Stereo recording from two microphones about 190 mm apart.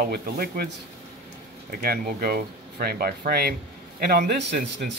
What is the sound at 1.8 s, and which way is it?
Speech, 50° right (ahead or behind).